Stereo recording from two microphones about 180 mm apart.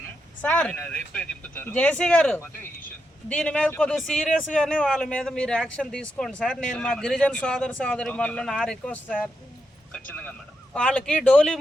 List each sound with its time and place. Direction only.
0.4 s a man's voice: 5° left (ahead or behind)
10.8 s a man's voice: 5° left (ahead or behind)